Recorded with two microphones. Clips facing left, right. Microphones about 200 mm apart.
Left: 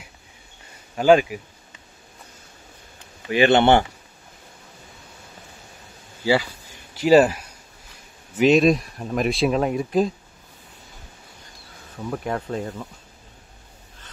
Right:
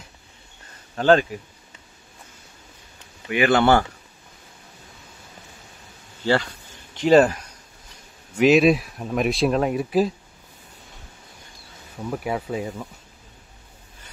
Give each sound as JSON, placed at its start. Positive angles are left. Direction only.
{"t": 0.9, "sound": "speech", "side_deg": 10}
{"t": 3.3, "sound": "speech", "side_deg": 25}
{"t": 6.2, "sound": "a sound", "side_deg": 10}
{"t": 8.4, "sound": "speech", "side_deg": 0}
{"t": 12.0, "sound": "speech", "side_deg": -5}